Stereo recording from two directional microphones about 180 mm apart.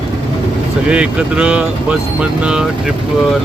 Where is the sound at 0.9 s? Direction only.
5° right (ahead or behind).